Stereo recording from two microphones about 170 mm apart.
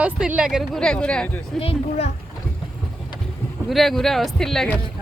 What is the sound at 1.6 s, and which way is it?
Speech, 35° left (ahead or behind).